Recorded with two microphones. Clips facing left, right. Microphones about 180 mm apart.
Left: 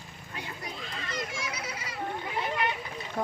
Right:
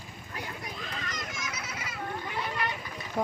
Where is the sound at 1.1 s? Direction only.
30° left (ahead or behind).